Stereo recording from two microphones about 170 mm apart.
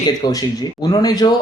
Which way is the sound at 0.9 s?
25° left (ahead or behind).